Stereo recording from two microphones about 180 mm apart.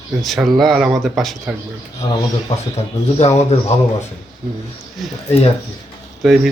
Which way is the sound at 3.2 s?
40° left (ahead or behind).